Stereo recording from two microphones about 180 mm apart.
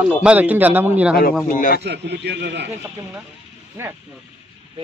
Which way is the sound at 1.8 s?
70° right (ahead or behind).